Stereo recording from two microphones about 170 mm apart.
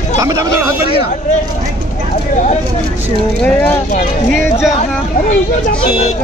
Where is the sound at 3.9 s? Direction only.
45° left (ahead or behind).